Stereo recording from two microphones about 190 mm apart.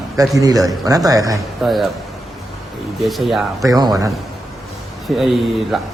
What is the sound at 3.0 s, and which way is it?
Speech, centre (ahead or behind).